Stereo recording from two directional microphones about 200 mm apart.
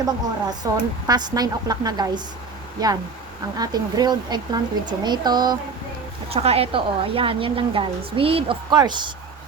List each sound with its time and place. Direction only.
0.0 s a woman's voice: 20° right (ahead or behind)